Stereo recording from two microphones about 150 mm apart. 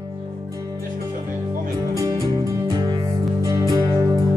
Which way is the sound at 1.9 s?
20° right (ahead or behind).